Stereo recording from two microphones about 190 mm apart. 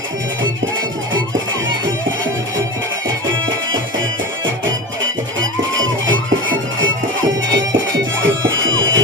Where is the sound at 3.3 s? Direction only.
90° right.